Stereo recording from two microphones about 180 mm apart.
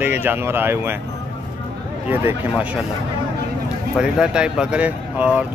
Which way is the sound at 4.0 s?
5° right (ahead or behind).